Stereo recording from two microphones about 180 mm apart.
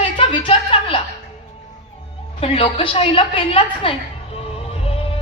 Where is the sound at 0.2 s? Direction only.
30° left (ahead or behind).